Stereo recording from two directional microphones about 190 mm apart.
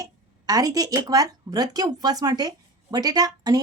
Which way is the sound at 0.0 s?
20° right (ahead or behind).